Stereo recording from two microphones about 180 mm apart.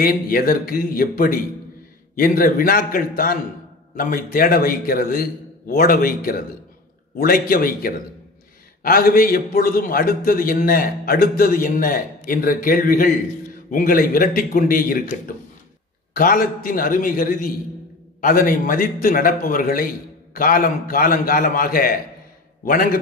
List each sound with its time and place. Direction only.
0.0 s a man's voice: 55° left (ahead or behind)